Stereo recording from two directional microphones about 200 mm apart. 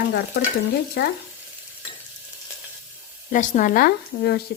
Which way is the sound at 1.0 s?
55° left (ahead or behind).